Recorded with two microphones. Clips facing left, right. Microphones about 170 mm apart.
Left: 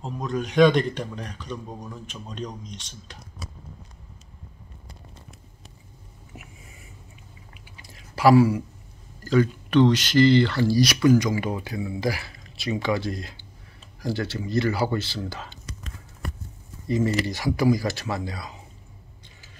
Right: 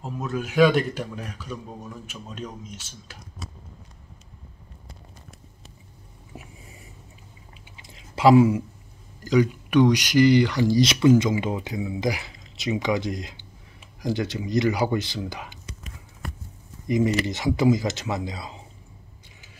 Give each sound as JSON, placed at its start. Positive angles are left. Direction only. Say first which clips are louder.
{"t": 0.0, "sound": "a man's voice", "louder": "left 1 dB", "side_deg": -5}
{"t": 7.7, "sound": "chewing", "louder": "right 1 dB", "side_deg": -20}
{"t": 9.2, "sound": "speech", "louder": "right 1 dB", "side_deg": -15}
{"t": 16.8, "sound": "speech", "louder": "right 1 dB", "side_deg": -15}